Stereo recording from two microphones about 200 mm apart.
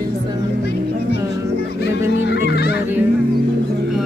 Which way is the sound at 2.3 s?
55° left (ahead or behind).